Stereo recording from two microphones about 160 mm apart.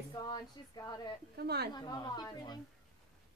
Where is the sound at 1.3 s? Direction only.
90° right.